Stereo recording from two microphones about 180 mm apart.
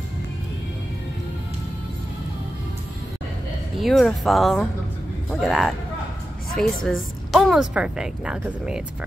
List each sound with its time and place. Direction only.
3.7 s a woman's voice: centre (ahead or behind)